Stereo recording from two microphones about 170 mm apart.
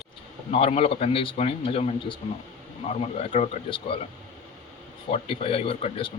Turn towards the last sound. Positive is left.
turn(degrees=35)  # may be behind; listen again after turning